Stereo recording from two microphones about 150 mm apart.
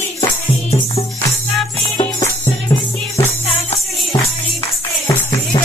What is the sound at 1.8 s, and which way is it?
Music, 30° left (ahead or behind).